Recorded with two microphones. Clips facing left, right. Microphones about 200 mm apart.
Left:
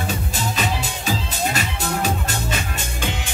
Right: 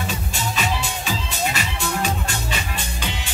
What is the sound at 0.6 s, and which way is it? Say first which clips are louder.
Music: even; 40° left (ahead or behind).